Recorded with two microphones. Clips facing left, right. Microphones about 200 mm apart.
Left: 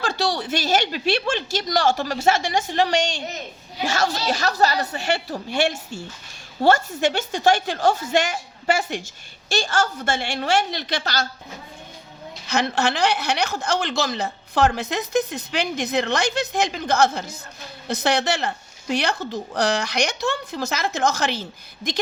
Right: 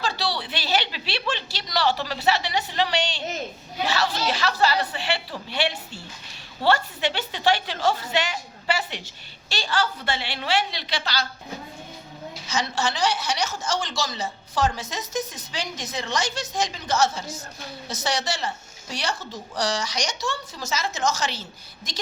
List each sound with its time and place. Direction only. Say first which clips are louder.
0.0 s a woman's voice: left 4 dB; 50° left (ahead or behind)
12.5 s a woman's voice: left 5 dB; 60° left (ahead or behind)